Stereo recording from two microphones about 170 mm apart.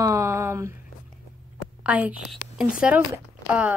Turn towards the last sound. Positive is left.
turn(degrees=-10)  # may be behind; listen again after turning